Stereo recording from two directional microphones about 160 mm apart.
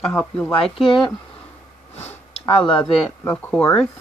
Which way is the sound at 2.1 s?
35° left (ahead or behind).